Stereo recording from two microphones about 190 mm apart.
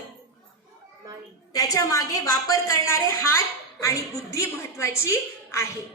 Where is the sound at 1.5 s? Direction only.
20° left (ahead or behind).